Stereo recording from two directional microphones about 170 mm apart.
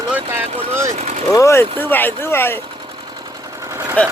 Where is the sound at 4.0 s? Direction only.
10° left (ahead or behind).